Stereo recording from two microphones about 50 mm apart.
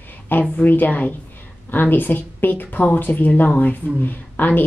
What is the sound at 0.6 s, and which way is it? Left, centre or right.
A woman's voice, left.